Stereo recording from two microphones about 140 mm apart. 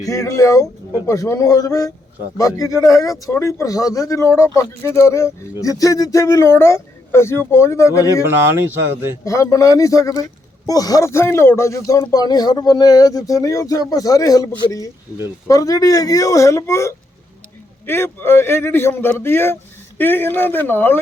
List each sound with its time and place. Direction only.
0.0 s a man's voice: 25° left (ahead or behind)
8.3 s speech: 15° right (ahead or behind)
9.2 s a man's voice: 25° left (ahead or behind)